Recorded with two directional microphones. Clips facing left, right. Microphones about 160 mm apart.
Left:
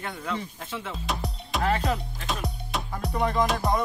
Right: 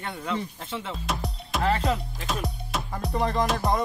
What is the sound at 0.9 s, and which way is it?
Music, centre (ahead or behind).